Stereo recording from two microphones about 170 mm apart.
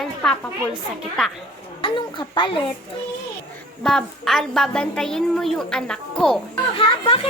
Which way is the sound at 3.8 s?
5° left (ahead or behind).